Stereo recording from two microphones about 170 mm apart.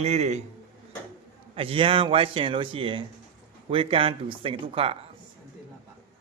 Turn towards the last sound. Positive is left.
turn(degrees=-30)  # may be behind; listen again after turning